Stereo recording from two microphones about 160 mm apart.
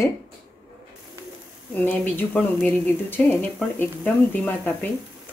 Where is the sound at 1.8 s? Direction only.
10° left (ahead or behind).